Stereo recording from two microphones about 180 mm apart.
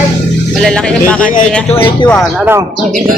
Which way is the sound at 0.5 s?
Centre (ahead or behind).